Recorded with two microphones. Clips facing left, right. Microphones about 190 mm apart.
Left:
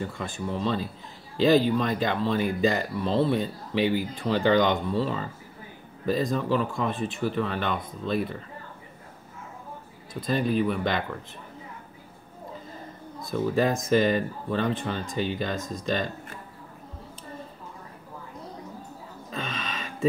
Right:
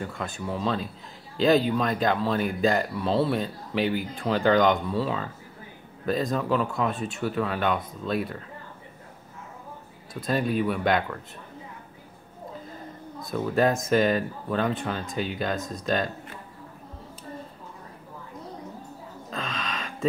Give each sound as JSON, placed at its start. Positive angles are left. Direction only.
{"t": 0.0, "sound": "speech", "side_deg": 0}
{"t": 6.0, "sound": "speech", "side_deg": 0}
{"t": 10.2, "sound": "speech", "side_deg": 0}
{"t": 13.2, "sound": "speech", "side_deg": 0}
{"t": 19.3, "sound": "a sound", "side_deg": 0}